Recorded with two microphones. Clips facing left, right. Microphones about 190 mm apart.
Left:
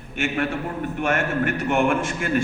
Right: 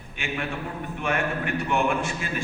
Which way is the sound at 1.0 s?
45° left (ahead or behind).